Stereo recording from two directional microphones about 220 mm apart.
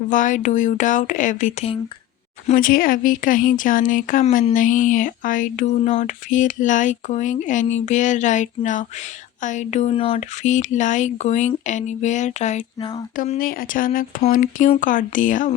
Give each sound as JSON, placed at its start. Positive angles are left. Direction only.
{"t": 0.1, "sound": "speech", "side_deg": 35}
{"t": 13.1, "sound": "speech", "side_deg": 40}